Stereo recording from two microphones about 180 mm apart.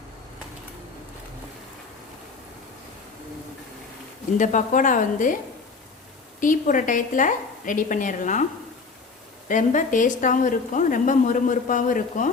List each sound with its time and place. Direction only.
4.4 s a woman's voice: 45° left (ahead or behind)
6.4 s a woman's voice: 45° left (ahead or behind)
9.5 s a woman's voice: 45° left (ahead or behind)